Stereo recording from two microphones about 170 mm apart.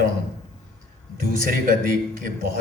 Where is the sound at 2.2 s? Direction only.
55° right (ahead or behind).